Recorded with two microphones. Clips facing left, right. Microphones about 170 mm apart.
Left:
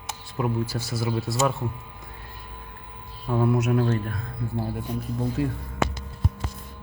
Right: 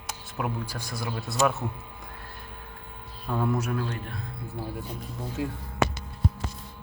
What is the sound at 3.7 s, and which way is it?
Speech, 45° left (ahead or behind).